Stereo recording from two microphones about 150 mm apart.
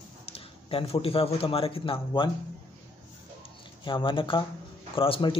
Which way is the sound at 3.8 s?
35° left (ahead or behind).